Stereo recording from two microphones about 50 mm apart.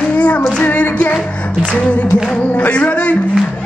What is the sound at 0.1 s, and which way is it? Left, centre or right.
Child singing, left.